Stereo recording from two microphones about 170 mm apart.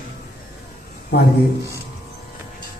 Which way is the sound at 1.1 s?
70° left (ahead or behind).